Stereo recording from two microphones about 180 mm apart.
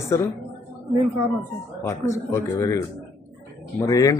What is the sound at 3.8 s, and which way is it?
Speech, 20° left (ahead or behind).